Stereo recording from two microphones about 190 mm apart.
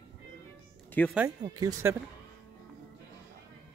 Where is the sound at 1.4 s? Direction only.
20° right (ahead or behind).